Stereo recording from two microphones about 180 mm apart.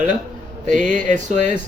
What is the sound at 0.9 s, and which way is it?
Speech, 45° right (ahead or behind).